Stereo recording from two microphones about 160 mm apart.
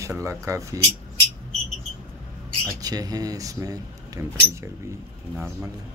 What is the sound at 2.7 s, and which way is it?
Speech, 25° right (ahead or behind).